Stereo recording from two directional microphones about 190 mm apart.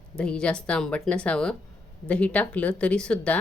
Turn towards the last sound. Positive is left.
turn(degrees=5)  # may be behind; listen again after turning